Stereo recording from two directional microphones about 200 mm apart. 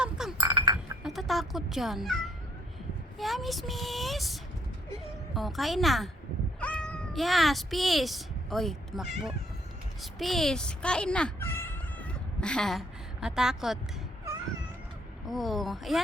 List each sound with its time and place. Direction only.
0.0 s chink: centre (ahead or behind)
0.3 s chink: 20° right (ahead or behind)
1.0 s speech: centre (ahead or behind)
3.2 s child singing: centre (ahead or behind)
6.6 s speech: 5° left (ahead or behind)
15.3 s child singing: centre (ahead or behind)